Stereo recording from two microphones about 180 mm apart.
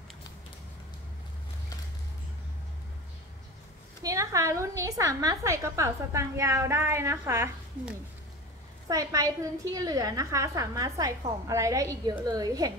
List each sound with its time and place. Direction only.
4.0 s a woman's voice: 15° right (ahead or behind)